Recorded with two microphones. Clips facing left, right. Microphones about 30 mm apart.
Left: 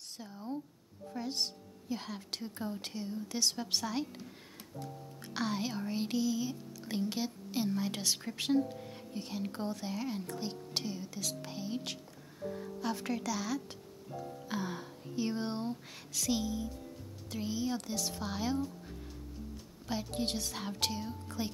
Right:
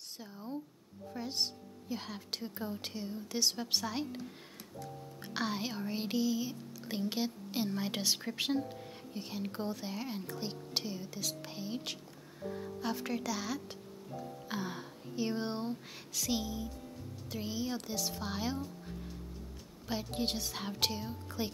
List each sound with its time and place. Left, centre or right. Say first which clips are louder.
0.2 s a woman's voice: left 2 dB; centre